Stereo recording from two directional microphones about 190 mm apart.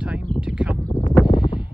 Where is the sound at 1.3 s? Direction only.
25° left (ahead or behind).